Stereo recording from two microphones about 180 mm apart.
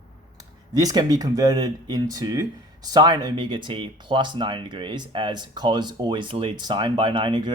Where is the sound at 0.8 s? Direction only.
20° right (ahead or behind).